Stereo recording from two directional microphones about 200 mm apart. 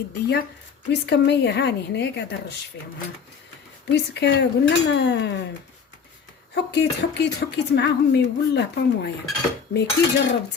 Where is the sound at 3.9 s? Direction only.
60° left (ahead or behind).